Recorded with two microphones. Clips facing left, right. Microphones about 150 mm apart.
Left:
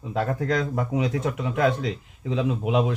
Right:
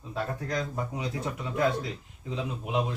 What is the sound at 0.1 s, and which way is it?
A man's voice, 85° left.